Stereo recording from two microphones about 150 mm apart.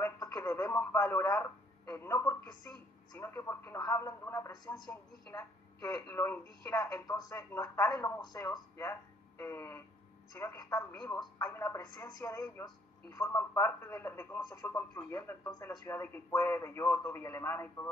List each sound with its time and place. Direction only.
0.0 s radio: 25° left (ahead or behind)
0.4 s speech: 20° left (ahead or behind)